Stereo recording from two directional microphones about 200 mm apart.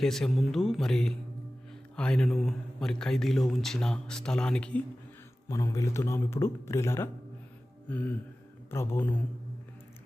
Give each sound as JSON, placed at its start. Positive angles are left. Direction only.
{"t": 0.0, "sound": "a man's voice", "side_deg": 0}
{"t": 5.5, "sound": "a man's voice", "side_deg": 15}